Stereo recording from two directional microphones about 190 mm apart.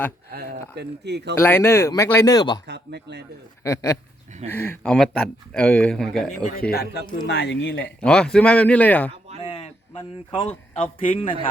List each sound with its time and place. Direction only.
0.3 s speech: 55° right (ahead or behind)
1.4 s speech: 10° left (ahead or behind)
2.6 s speech: 65° right (ahead or behind)
3.6 s speech: 15° left (ahead or behind)
6.6 s speech: 55° left (ahead or behind)
7.3 s speech: 65° left (ahead or behind)
8.0 s speech: 5° left (ahead or behind)
9.4 s a sound: 30° left (ahead or behind)
10.8 s a man's voice: 30° left (ahead or behind)